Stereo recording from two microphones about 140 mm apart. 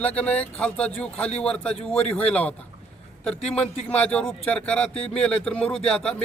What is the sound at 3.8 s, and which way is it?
Speech, 10° left (ahead or behind).